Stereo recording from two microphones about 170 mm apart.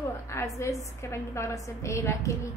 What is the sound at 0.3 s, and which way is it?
A woman's voice, 15° left (ahead or behind).